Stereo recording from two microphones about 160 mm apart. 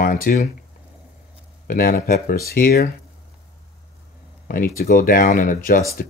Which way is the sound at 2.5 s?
75° left (ahead or behind).